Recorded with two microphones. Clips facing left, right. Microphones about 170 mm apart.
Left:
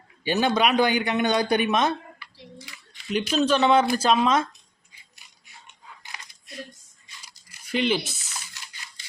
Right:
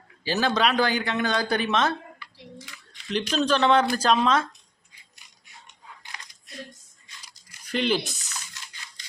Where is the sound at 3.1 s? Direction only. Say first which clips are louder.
Left 2 dB; 5° left (ahead or behind).